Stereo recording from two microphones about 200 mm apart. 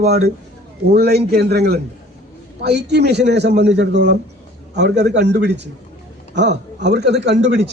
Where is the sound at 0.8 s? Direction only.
55° right (ahead or behind).